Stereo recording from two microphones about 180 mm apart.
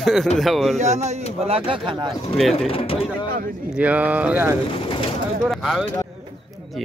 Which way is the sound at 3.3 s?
50° right (ahead or behind).